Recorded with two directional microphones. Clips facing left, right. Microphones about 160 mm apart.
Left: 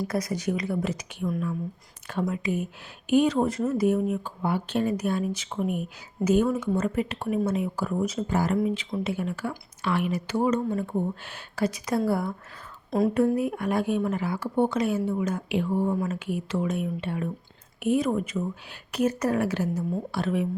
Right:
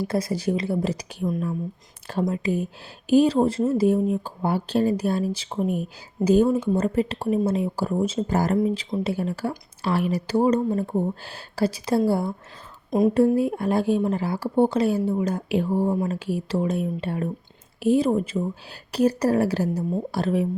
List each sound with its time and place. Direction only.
0.0 s speech: 30° right (ahead or behind)